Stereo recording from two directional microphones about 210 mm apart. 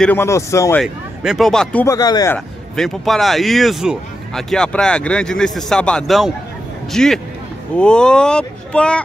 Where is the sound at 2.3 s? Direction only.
Centre (ahead or behind).